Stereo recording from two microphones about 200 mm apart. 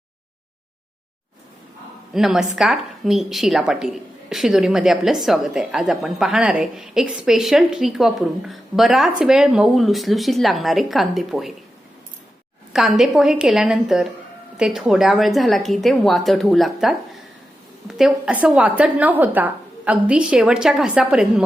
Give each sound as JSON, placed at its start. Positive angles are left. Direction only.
{"t": 2.1, "sound": "a woman's voice", "side_deg": 0}
{"t": 12.7, "sound": "a woman's voice", "side_deg": 0}